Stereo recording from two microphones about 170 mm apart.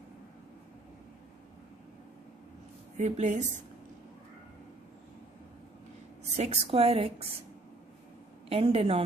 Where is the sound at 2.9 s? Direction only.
40° right (ahead or behind).